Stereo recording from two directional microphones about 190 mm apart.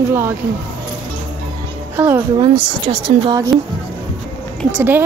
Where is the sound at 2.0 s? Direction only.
10° right (ahead or behind).